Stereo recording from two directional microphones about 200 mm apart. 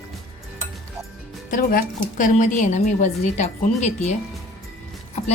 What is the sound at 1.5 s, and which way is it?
A woman's voice, 45° left (ahead or behind).